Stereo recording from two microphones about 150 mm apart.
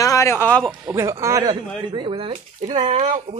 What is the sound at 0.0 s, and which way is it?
Speech, 20° left (ahead or behind).